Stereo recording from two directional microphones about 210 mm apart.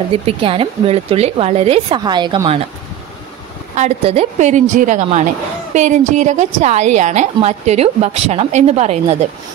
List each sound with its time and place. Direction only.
0.1 s speech: 25° right (ahead or behind)
3.7 s a woman's voice: 30° right (ahead or behind)